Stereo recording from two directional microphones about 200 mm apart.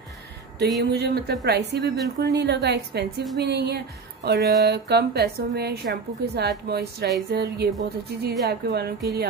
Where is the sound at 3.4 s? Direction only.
55° right (ahead or behind).